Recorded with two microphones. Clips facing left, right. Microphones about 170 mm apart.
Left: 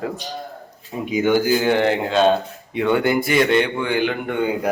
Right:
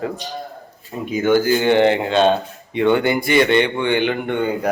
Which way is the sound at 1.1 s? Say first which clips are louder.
Right 1 dB; 15° left (ahead or behind).